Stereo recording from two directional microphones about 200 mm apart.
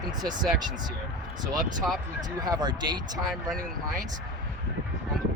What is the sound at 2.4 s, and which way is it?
Speech, 20° right (ahead or behind).